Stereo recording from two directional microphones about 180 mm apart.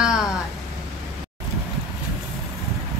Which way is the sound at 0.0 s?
5° right (ahead or behind).